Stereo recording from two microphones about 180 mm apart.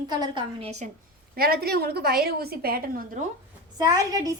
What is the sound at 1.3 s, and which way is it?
A woman's voice, 55° right (ahead or behind).